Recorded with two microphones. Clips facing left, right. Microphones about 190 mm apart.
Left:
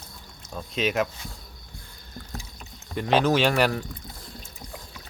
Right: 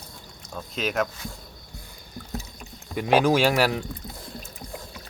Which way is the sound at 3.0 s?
10° right (ahead or behind).